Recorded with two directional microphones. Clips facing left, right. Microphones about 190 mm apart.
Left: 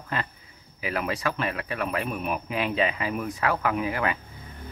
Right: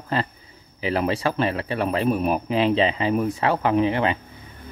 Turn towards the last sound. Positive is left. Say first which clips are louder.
# right 6 dB
turn(degrees=-25)  # may be behind; listen again after turning